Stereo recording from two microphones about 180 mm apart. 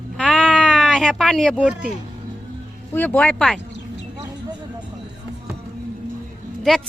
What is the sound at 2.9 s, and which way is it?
Speech, 10° left (ahead or behind).